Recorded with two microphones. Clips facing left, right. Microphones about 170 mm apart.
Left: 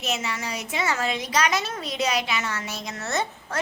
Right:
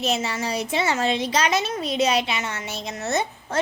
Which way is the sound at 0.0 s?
30° right (ahead or behind).